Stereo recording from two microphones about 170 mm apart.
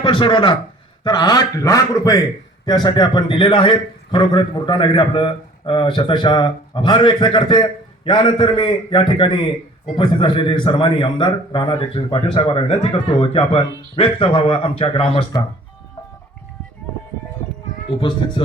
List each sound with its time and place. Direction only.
0.0 s a man's voice: 30° left (ahead or behind)